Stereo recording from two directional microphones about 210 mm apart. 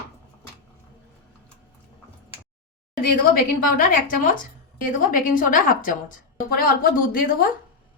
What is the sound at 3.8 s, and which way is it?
A woman's voice, 40° left (ahead or behind).